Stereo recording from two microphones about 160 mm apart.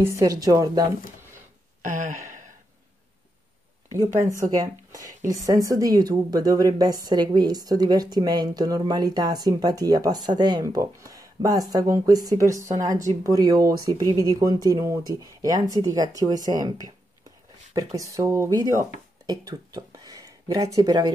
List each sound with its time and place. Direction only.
0.0 s a woman's voice: 20° right (ahead or behind)
1.9 s speech: 50° right (ahead or behind)
4.4 s a woman's voice: 20° right (ahead or behind)